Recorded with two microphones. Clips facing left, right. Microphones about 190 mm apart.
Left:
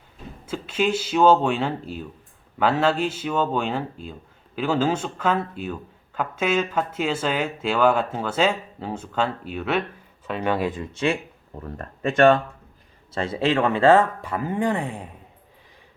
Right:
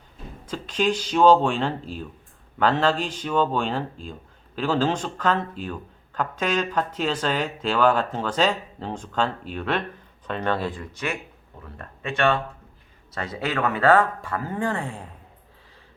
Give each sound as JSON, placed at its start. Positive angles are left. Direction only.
{"t": 0.4, "sound": "speech", "side_deg": 5}
{"t": 11.8, "sound": "speech", "side_deg": 40}
{"t": 13.1, "sound": "speech", "side_deg": 25}